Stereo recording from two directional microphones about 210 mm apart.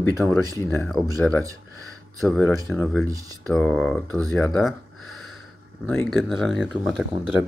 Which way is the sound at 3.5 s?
Centre (ahead or behind).